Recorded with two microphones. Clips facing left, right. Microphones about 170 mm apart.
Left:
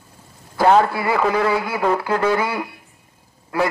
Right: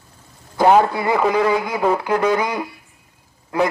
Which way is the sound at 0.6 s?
15° right (ahead or behind).